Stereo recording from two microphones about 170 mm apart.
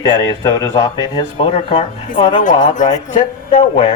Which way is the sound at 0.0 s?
20° left (ahead or behind).